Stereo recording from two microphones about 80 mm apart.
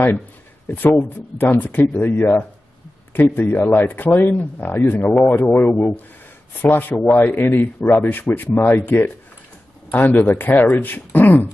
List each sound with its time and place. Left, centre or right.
0.7 s speech: left